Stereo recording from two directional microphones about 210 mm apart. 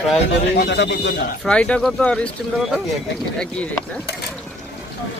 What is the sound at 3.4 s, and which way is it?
Speech, 5° left (ahead or behind).